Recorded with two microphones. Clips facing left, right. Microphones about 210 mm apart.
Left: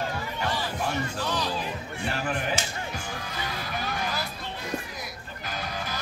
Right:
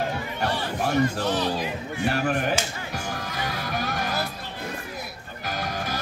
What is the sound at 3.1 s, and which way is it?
Music, 50° right (ahead or behind).